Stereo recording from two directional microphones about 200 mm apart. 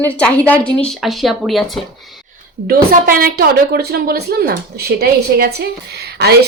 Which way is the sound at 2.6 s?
50° right (ahead or behind).